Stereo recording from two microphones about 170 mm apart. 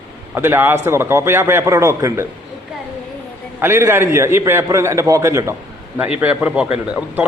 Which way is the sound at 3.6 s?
15° right (ahead or behind).